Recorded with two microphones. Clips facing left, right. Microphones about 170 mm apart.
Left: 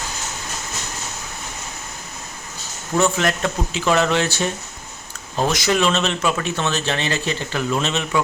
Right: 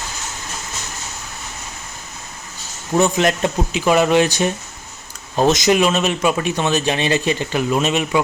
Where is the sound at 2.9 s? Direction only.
20° right (ahead or behind).